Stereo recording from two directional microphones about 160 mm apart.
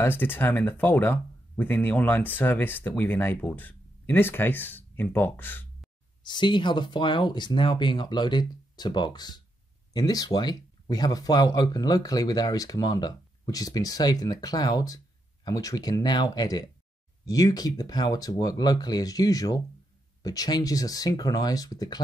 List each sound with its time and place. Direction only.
0.0 s speech: 15° left (ahead or behind)
6.2 s speech: 30° left (ahead or behind)